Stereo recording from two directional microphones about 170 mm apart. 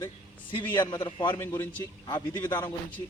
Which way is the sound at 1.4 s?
15° left (ahead or behind).